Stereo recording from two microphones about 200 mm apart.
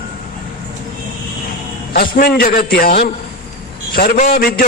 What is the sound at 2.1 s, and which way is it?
A man's voice, 50° left (ahead or behind).